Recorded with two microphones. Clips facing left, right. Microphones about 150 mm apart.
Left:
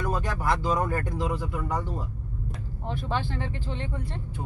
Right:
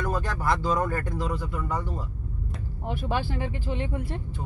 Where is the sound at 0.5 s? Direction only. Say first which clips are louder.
Right 1 dB; 15° left (ahead or behind).